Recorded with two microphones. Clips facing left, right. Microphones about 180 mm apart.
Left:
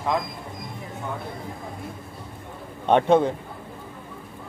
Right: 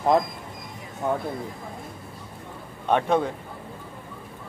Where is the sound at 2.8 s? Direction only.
25° left (ahead or behind).